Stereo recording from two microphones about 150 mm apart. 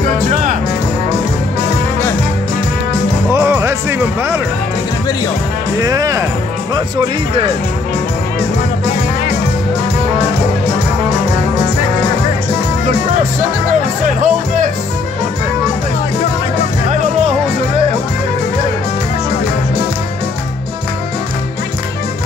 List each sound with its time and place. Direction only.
0.3 s music: 55° right (ahead or behind)
3.3 s music: 15° right (ahead or behind)
5.8 s speech: 25° right (ahead or behind)
14.0 s speech: 60° right (ahead or behind)